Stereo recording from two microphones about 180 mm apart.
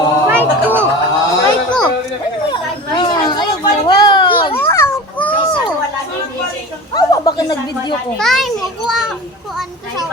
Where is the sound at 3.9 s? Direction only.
25° left (ahead or behind).